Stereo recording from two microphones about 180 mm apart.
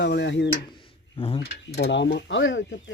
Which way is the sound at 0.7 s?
25° left (ahead or behind).